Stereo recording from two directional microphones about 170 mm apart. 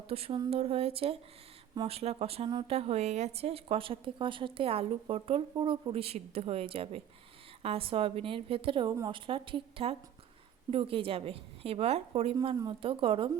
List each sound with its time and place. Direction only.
0.1 s a woman's voice: 35° right (ahead or behind)
2.0 s a woman's voice: 35° right (ahead or behind)